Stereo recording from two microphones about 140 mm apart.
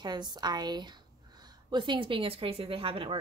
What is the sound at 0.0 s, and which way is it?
A woman's voice, 30° right (ahead or behind).